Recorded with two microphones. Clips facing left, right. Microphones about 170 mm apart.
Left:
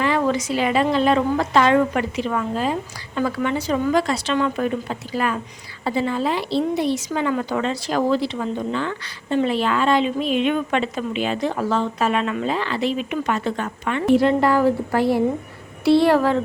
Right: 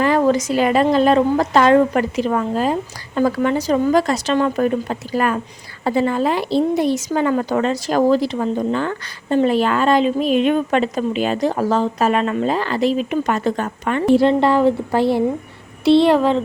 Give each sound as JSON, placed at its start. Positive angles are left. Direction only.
{"t": 0.0, "sound": "a woman's voice", "side_deg": -40}
{"t": 14.1, "sound": "a woman's voice", "side_deg": -30}